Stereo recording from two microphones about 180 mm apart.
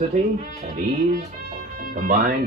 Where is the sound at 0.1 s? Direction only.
45° right (ahead or behind).